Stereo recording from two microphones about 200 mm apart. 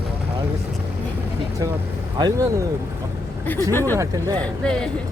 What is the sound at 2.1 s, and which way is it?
Speech, 20° right (ahead or behind).